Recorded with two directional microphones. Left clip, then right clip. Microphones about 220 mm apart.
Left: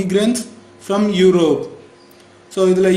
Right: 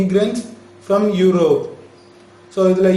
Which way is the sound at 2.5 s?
40° left (ahead or behind).